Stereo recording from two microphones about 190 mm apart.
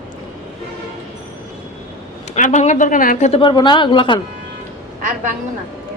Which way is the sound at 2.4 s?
40° left (ahead or behind).